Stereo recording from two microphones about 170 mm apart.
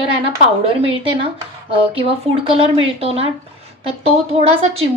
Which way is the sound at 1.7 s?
30° right (ahead or behind).